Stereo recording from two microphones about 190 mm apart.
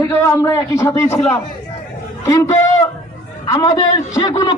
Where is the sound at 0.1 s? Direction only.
15° left (ahead or behind).